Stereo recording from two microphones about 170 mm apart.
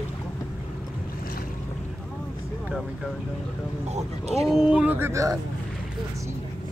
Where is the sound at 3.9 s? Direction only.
40° right (ahead or behind).